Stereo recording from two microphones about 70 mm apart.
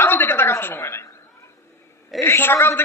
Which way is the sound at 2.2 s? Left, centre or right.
Left.